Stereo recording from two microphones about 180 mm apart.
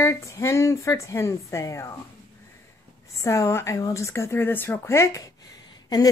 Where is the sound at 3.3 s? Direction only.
15° left (ahead or behind).